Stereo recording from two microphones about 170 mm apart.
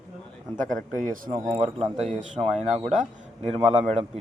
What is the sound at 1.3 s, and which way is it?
A man's voice, 25° right (ahead or behind).